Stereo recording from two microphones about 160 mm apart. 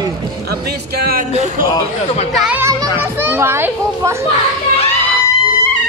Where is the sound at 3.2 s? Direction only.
15° right (ahead or behind).